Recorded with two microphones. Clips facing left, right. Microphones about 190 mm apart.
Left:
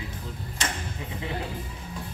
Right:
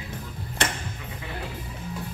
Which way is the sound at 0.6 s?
60° right (ahead or behind).